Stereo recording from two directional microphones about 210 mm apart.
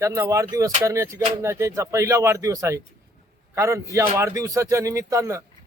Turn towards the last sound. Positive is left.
turn(degrees=-15)  # may be behind; listen again after turning